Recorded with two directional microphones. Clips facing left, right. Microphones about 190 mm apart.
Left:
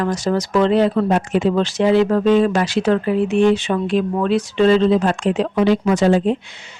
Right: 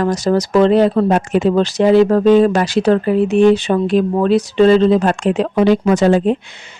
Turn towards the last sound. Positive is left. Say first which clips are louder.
# right 3 dB
turn(degrees=-55)  # may be behind; listen again after turning